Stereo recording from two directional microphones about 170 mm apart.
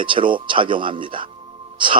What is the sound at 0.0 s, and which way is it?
Speech, 30° right (ahead or behind).